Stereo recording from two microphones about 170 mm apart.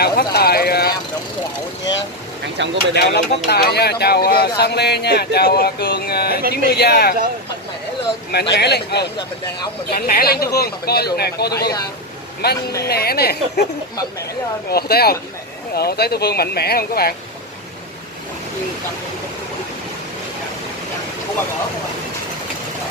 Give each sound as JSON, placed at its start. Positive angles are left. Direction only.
{"t": 0.0, "sound": "vehicle", "side_deg": 70}
{"t": 2.4, "sound": "speech", "side_deg": -90}
{"t": 2.9, "sound": "speech", "side_deg": 70}
{"t": 8.3, "sound": "speech", "side_deg": 75}
{"t": 9.8, "sound": "speech", "side_deg": 60}
{"t": 14.7, "sound": "speech", "side_deg": 65}